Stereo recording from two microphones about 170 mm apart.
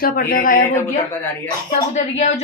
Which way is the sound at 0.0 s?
55° left (ahead or behind).